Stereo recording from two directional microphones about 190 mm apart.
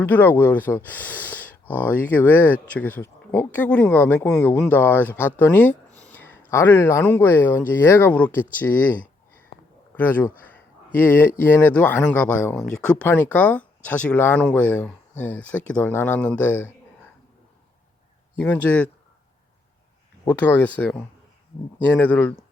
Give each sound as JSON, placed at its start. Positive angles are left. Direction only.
{"t": 0.0, "sound": "speech", "side_deg": 10}
{"t": 9.5, "sound": "a sound", "side_deg": 30}
{"t": 9.9, "sound": "speech", "side_deg": 10}
{"t": 18.3, "sound": "speech", "side_deg": 10}
{"t": 20.2, "sound": "speech", "side_deg": 10}
{"t": 21.9, "sound": "speech", "side_deg": 10}